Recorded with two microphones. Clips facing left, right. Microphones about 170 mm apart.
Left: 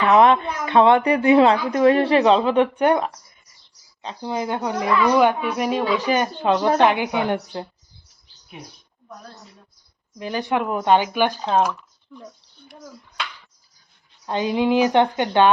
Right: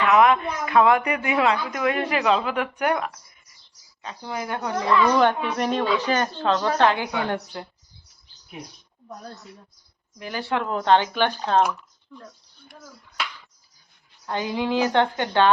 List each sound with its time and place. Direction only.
0.0 s a woman's voice: 30° left (ahead or behind)
10.2 s speech: 20° left (ahead or behind)
14.3 s a woman's voice: 20° left (ahead or behind)